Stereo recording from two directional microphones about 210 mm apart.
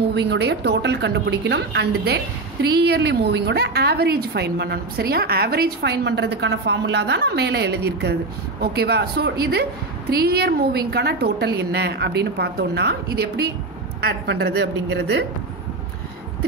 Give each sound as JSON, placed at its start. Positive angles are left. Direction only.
{"t": 0.1, "sound": "a woman's voice", "side_deg": -55}